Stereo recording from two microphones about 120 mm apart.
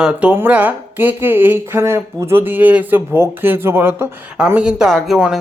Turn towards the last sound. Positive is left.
turn(degrees=-5)  # may be behind; listen again after turning